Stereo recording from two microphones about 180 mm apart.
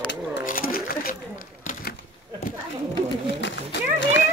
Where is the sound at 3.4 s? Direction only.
80° left.